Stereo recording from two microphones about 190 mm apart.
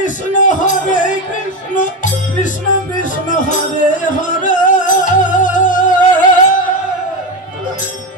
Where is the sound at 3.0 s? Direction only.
40° left (ahead or behind).